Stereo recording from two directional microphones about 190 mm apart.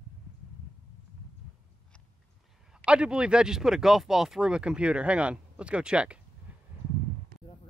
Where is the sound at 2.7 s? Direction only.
5° right (ahead or behind).